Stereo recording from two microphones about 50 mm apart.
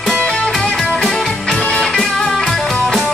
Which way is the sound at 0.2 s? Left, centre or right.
Centre.